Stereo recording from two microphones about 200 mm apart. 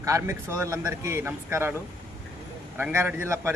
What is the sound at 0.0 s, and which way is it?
Speech, 15° right (ahead or behind).